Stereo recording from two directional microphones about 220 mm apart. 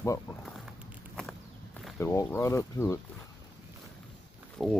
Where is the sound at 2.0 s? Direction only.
15° left (ahead or behind).